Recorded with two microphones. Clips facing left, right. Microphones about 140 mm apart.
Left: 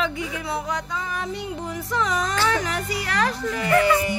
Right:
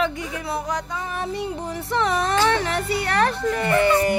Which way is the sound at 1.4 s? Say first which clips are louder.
Right 2 dB; 30° right (ahead or behind).